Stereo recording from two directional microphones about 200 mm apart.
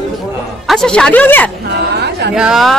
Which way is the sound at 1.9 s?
55° right (ahead or behind).